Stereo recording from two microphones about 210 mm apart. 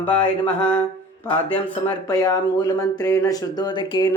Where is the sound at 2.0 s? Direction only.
20° left (ahead or behind).